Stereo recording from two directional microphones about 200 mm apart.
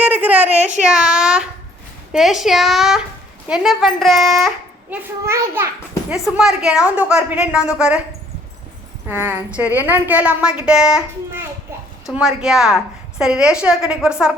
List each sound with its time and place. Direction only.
0.0 s a sound: 10° right (ahead or behind)
0.5 s speech: 35° right (ahead or behind)
0.8 s a woman's voice: 5° right (ahead or behind)
5.2 s a woman's voice: 10° right (ahead or behind)
9.0 s a woman's voice: 10° right (ahead or behind)
12.0 s a woman's voice: 5° right (ahead or behind)